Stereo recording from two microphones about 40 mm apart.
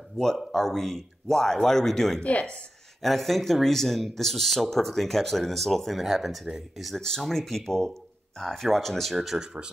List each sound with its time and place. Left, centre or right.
0.4 s speech: centre
2.2 s speech: left
3.0 s speech: centre
7.0 s speech: centre
9.1 s speech: centre
9.4 s speech: right